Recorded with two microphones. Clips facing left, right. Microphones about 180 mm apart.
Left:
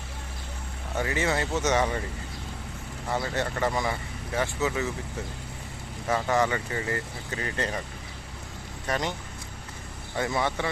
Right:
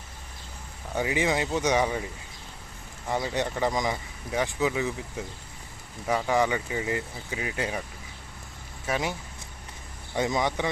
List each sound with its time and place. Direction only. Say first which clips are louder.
0.9 s speech: right 1 dB; 15° right (ahead or behind)
3.1 s speech: right 1 dB; 15° right (ahead or behind)
6.1 s speech: even; 10° right (ahead or behind)
8.9 s speech: even; 5° right (ahead or behind)
10.2 s speech: right 1 dB; 15° right (ahead or behind)